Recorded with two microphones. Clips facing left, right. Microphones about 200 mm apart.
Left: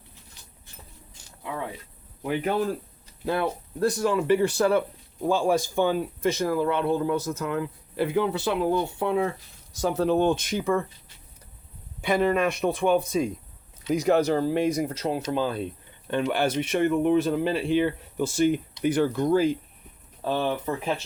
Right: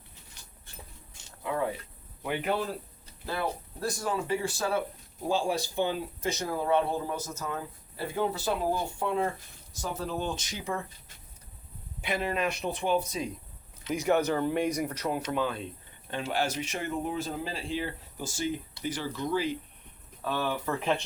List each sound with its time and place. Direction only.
2.2 s speech: 45° left (ahead or behind)
3.2 s speech: 60° left (ahead or behind)
5.3 s speech: 50° left (ahead or behind)
6.5 s speech: 70° left (ahead or behind); by 10.8 s 55° left (ahead or behind)
12.2 s speech: 50° left (ahead or behind)
13.8 s speech: 35° left (ahead or behind)
16.0 s speech: 60° left (ahead or behind)
20.2 s speech: 30° left (ahead or behind)